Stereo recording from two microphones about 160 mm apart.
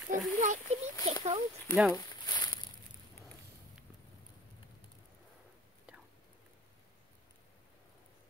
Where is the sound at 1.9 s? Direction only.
25° left (ahead or behind).